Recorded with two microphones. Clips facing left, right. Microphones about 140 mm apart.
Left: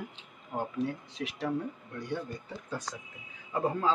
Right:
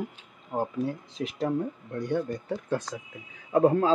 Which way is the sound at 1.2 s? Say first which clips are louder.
Right 5 dB; 40° right (ahead or behind).